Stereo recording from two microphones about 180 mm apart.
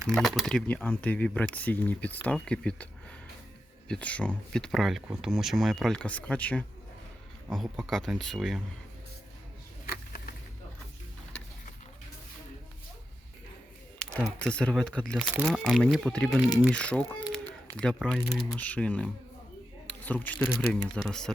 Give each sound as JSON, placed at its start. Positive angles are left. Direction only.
{"t": 0.1, "sound": "speech", "side_deg": 0}
{"t": 9.8, "sound": "a sound", "side_deg": 50}
{"t": 14.2, "sound": "speech", "side_deg": 0}
{"t": 17.2, "sound": "a sound", "side_deg": 5}
{"t": 18.5, "sound": "speech", "side_deg": 10}
{"t": 19.9, "sound": "camera", "side_deg": 10}
{"t": 20.5, "sound": "speech", "side_deg": 10}